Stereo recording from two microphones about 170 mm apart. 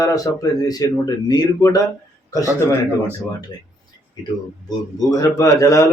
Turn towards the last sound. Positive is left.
turn(degrees=20)  # may be behind; listen again after turning